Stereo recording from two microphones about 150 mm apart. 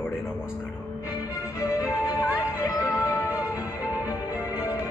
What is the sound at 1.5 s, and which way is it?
Music, 20° left (ahead or behind).